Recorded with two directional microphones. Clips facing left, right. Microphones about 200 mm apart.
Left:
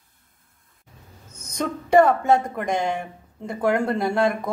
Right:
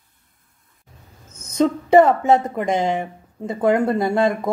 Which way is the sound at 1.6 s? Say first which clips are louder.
Right 4 dB; 20° right (ahead or behind).